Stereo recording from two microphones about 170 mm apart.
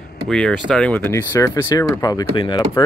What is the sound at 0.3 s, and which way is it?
Speech, 5° left (ahead or behind).